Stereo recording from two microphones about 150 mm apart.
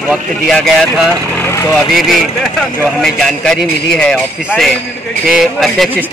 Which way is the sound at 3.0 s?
5° left (ahead or behind).